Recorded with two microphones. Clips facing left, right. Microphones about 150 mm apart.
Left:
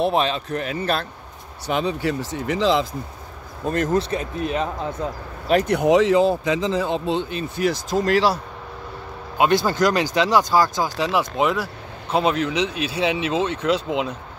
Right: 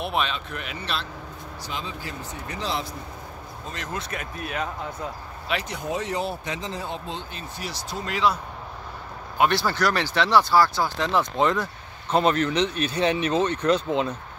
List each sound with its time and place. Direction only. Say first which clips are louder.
0.0 s speech: left 7 dB; 35° left (ahead or behind)
1.7 s speech: left 13 dB; 70° left (ahead or behind); by 2.8 s 90° left
3.6 s speech: left 14 dB; 50° left (ahead or behind)
4.0 s speech: left 8 dB; 30° left (ahead or behind)
5.5 s speech: left 11 dB; 45° left (ahead or behind)
5.8 s speech: left 15 dB; 90° left
9.4 s speech: left 4 dB; 20° left (ahead or behind)